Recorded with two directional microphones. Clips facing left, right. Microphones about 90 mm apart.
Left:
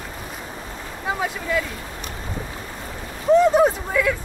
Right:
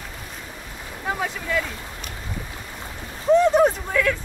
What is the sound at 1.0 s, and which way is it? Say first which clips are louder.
Speech: left 2 dB; 5° left (ahead or behind).